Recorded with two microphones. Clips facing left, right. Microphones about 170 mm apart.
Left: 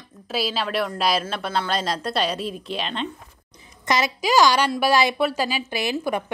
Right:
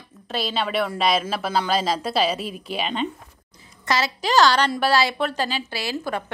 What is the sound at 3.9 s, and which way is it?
A woman's voice, 15° left (ahead or behind).